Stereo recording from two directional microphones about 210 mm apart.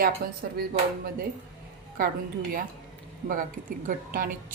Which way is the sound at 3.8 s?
40° right (ahead or behind).